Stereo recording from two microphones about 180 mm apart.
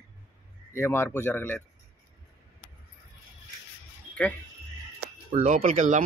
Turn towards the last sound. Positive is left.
turn(degrees=-45)  # may be behind; listen again after turning